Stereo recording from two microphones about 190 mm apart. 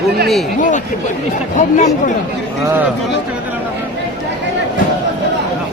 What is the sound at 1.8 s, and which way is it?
Speech, 40° left (ahead or behind).